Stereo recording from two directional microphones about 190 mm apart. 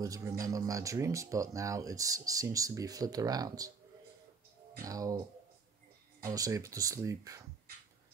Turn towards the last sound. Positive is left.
turn(degrees=-15)  # may be behind; listen again after turning